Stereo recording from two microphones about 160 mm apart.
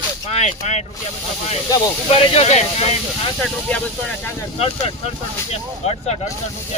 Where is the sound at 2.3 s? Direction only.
40° left (ahead or behind).